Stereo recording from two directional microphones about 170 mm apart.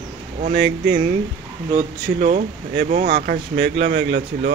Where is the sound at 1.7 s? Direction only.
45° right (ahead or behind).